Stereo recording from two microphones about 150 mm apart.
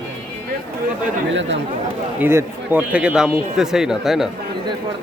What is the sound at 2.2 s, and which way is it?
Speech, 15° right (ahead or behind).